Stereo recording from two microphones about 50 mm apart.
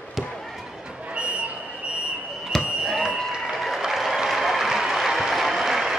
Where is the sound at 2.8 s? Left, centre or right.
Centre.